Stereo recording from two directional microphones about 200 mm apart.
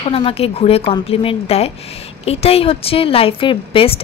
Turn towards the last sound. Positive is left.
turn(degrees=25)  # may be behind; listen again after turning